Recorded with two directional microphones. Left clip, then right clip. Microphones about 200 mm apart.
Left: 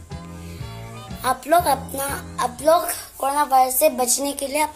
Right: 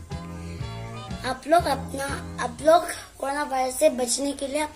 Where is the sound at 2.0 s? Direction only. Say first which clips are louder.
Left 7 dB; 40° left (ahead or behind).